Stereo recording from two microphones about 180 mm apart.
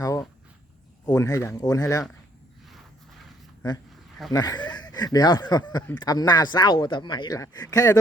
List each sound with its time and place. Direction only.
0.0 s a sound: 20° left (ahead or behind)
1.0 s speech: 20° left (ahead or behind)
4.3 s speech: 20° left (ahead or behind)